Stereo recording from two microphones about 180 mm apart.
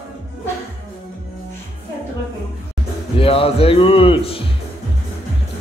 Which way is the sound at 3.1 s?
30° left (ahead or behind).